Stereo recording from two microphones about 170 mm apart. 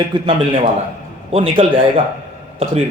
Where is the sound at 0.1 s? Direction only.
30° right (ahead or behind).